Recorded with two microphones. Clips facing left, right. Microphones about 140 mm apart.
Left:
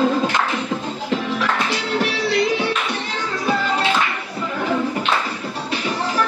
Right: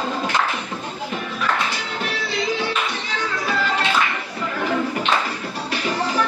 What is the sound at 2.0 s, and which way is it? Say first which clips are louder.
Music: left 7 dB; 75° left (ahead or behind).